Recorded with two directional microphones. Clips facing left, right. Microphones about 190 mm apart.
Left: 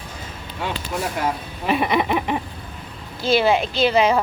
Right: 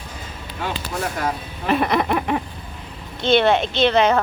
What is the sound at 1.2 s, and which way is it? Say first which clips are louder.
Speech: left 1 dB; 5° left (ahead or behind).